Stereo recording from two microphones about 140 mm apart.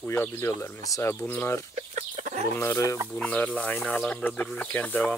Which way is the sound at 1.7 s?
60° right (ahead or behind).